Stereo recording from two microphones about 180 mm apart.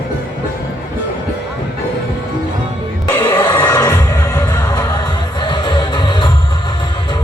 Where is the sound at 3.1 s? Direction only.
10° left (ahead or behind).